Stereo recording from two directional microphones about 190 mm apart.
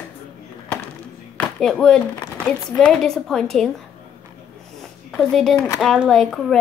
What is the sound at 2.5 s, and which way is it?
Speech, 5° left (ahead or behind).